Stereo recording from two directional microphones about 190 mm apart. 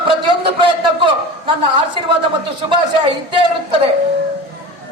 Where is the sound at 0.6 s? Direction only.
25° right (ahead or behind).